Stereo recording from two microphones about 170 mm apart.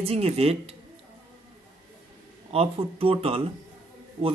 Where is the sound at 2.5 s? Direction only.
35° right (ahead or behind).